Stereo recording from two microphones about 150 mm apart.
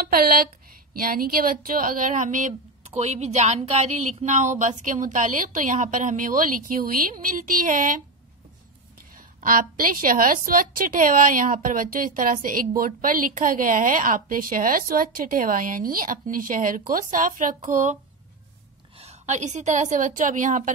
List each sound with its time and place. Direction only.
0.0 s speech: 85° right; by 8.0 s 65° right (ahead or behind)
9.4 s a woman's voice: 65° right (ahead or behind)
17.6 s a woman's voice: 55° right (ahead or behind)
18.9 s a woman's voice: 45° right (ahead or behind)